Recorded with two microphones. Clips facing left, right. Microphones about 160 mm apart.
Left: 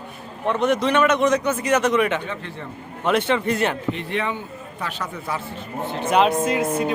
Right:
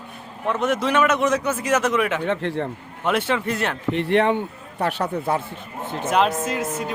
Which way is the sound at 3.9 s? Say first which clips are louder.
Right 7 dB; 65° right (ahead or behind).